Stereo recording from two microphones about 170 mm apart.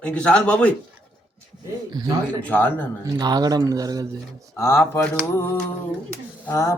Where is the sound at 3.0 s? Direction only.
25° right (ahead or behind).